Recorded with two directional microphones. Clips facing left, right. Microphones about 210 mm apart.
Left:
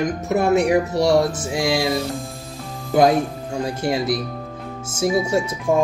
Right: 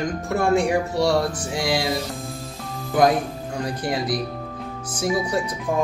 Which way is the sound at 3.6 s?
25° left (ahead or behind).